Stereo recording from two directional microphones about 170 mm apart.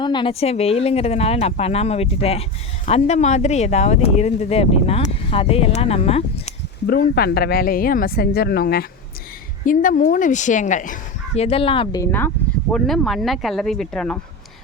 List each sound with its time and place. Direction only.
0.0 s speech: 25° left (ahead or behind)
6.8 s a woman's voice: 65° left (ahead or behind)
9.6 s a woman's voice: 50° left (ahead or behind)
11.3 s speech: 35° left (ahead or behind)
12.7 s speech: centre (ahead or behind)